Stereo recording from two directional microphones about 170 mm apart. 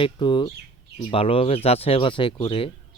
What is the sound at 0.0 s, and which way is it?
Speech, 30° left (ahead or behind).